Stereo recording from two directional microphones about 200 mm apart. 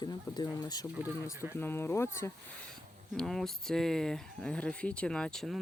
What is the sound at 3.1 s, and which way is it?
Speech, centre (ahead or behind).